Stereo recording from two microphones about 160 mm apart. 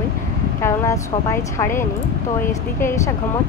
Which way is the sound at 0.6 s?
15° left (ahead or behind).